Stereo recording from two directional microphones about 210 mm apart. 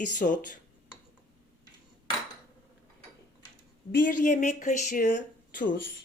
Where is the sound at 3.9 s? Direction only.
40° left (ahead or behind).